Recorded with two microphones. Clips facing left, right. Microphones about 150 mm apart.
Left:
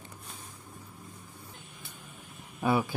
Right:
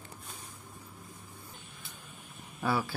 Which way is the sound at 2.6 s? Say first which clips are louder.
Left 4 dB; 20° left (ahead or behind).